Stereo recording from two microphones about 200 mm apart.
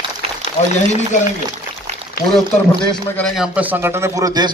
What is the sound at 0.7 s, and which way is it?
Speech, 35° left (ahead or behind).